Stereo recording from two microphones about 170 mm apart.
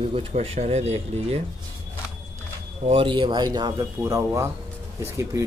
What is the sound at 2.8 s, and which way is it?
Speech, 30° right (ahead or behind).